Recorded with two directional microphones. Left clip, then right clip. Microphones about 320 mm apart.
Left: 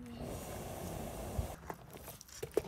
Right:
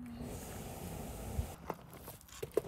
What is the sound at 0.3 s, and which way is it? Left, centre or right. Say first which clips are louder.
Vehicle: left 6 dB; centre.